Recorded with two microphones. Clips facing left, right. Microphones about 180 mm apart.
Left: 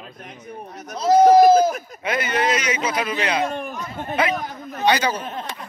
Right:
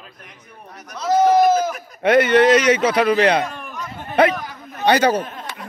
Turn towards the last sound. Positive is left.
turn(degrees=-60)  # may be behind; listen again after turning